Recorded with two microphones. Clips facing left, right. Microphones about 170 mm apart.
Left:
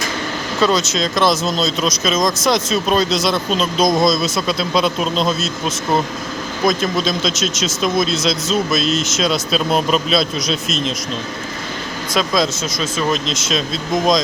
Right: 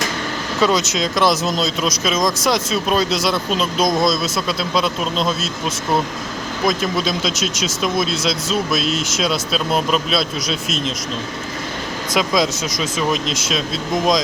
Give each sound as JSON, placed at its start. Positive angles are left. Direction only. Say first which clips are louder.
{"t": 0.6, "sound": "speech", "louder": "left 1 dB", "side_deg": -15}
{"t": 12.1, "sound": "speech", "louder": "even", "side_deg": -15}